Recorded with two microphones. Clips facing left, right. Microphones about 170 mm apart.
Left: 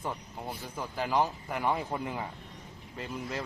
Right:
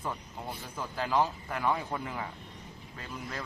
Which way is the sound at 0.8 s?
15° left (ahead or behind).